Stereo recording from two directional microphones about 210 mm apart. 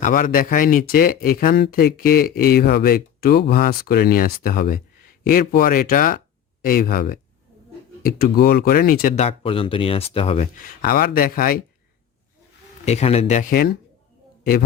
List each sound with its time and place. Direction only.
0.0 s speech: 40° left (ahead or behind)
12.8 s speech: 30° left (ahead or behind)